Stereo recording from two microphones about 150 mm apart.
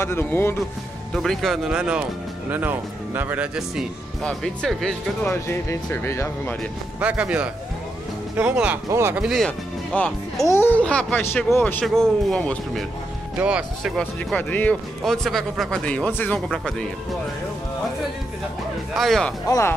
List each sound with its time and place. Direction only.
0.0 s speech: 15° left (ahead or behind)
1.1 s speech: 5° left (ahead or behind)
5.3 s speech: 15° left (ahead or behind)
7.0 s speech: 10° right (ahead or behind)
9.2 s speech: centre (ahead or behind)
13.4 s speech: 5° right (ahead or behind)
14.3 s speech: 10° left (ahead or behind)
18.9 s speech: centre (ahead or behind)